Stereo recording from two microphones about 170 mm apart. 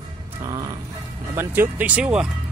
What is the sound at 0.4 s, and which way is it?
Music, 20° right (ahead or behind).